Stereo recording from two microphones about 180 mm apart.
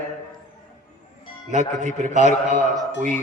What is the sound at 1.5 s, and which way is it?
Speech, 40° right (ahead or behind).